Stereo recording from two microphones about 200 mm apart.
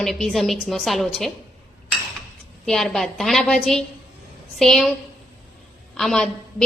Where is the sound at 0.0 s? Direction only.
Centre (ahead or behind).